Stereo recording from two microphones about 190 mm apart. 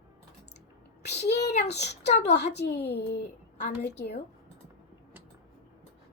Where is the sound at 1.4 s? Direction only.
35° left (ahead or behind).